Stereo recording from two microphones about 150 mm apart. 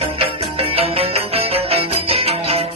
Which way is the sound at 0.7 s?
40° right (ahead or behind).